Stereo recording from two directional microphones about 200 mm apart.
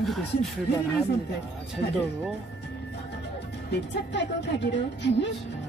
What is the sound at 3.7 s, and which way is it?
A woman's voice, 60° left (ahead or behind).